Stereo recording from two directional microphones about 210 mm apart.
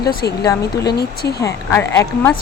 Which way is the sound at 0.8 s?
50° left (ahead or behind).